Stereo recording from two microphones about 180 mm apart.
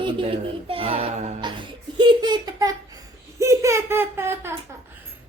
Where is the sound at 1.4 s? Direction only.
25° right (ahead or behind).